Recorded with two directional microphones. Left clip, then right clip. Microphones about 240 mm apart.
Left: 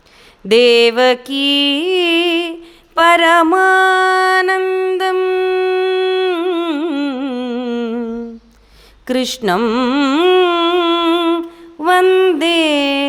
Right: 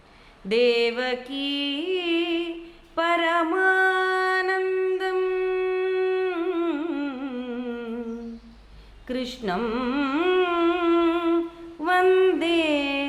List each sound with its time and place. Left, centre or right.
0.4 s mantra: left
2.9 s music: left
9.0 s a sound: left
11.8 s female singing: left